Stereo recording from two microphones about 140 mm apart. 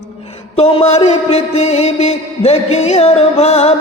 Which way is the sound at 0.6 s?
45° left (ahead or behind).